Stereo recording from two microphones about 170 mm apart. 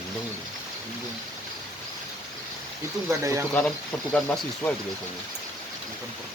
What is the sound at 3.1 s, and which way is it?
Speech, 15° right (ahead or behind).